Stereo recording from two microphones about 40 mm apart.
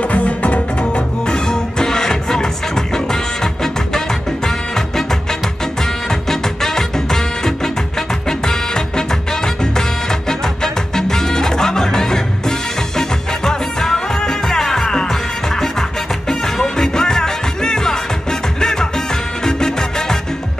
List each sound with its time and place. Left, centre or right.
0.0 s music: left
0.7 s music: left